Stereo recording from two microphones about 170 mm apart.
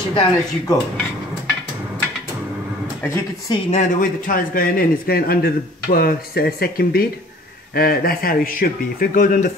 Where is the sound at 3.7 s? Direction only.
50° left (ahead or behind).